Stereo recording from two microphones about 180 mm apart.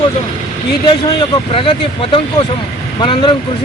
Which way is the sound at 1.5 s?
30° left (ahead or behind).